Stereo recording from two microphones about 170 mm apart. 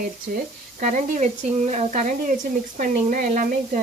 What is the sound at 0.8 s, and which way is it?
Speech, 50° right (ahead or behind).